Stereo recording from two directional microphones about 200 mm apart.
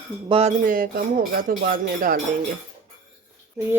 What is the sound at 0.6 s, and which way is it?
Speech, 45° right (ahead or behind).